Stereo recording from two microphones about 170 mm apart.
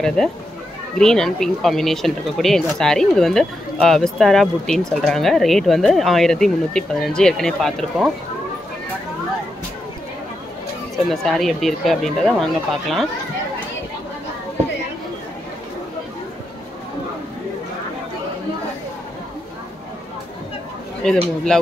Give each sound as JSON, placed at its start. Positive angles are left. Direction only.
{"t": 0.2, "sound": "speech", "side_deg": 5}
{"t": 11.1, "sound": "speech", "side_deg": 0}
{"t": 21.0, "sound": "speech", "side_deg": 5}